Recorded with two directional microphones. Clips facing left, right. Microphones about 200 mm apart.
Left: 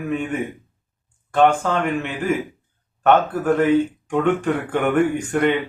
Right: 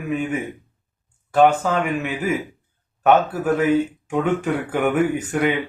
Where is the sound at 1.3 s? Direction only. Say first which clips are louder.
Right 1 dB; 5° right (ahead or behind).